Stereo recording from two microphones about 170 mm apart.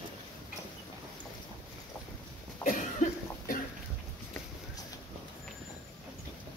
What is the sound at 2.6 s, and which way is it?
Cough, 50° left (ahead or behind).